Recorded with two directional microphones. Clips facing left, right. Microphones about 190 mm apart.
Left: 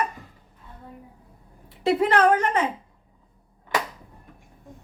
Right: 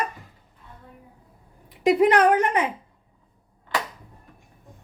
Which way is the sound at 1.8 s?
15° right (ahead or behind).